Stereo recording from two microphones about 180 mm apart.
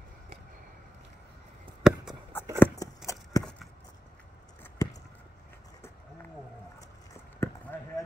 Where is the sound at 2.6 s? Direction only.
20° left (ahead or behind).